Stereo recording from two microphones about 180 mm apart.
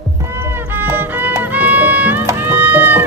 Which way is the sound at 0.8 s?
10° right (ahead or behind).